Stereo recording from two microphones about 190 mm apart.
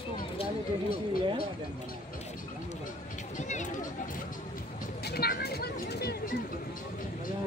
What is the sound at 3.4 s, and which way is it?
Speech, 40° left (ahead or behind).